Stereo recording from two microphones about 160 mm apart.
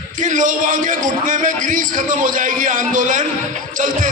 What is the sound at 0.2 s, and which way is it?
A man's voice, 55° right (ahead or behind).